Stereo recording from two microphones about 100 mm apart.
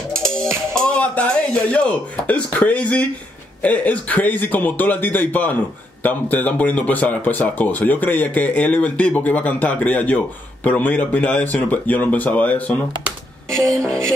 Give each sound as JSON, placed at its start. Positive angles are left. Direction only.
{"t": 0.7, "sound": "speech", "side_deg": 10}
{"t": 13.8, "sound": "music", "side_deg": 5}